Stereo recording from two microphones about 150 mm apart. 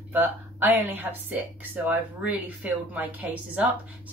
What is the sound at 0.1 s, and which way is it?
Speech, 10° right (ahead or behind).